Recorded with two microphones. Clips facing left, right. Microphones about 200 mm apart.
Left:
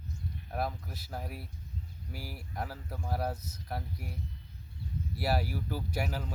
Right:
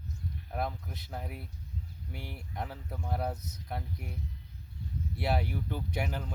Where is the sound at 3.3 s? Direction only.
20° right (ahead or behind).